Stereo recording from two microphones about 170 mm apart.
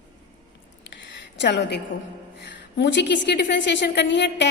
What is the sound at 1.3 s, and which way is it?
Speech, 90° left.